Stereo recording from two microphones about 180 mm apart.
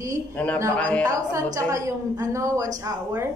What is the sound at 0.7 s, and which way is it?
Speech, 5° left (ahead or behind).